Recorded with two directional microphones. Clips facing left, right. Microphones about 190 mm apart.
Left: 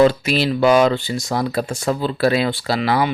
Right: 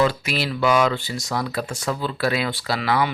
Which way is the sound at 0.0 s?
25° left (ahead or behind).